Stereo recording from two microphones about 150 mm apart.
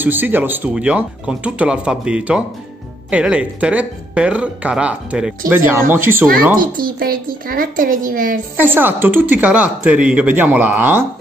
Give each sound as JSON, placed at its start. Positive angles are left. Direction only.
{"t": 0.0, "sound": "speech", "side_deg": -10}
{"t": 6.6, "sound": "a woman's voice", "side_deg": -75}
{"t": 8.5, "sound": "speech", "side_deg": -15}